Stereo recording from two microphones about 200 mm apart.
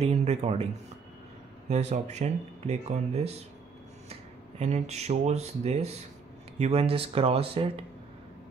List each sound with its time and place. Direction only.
0.0 s speech: 30° right (ahead or behind)
1.7 s speech: 35° right (ahead or behind)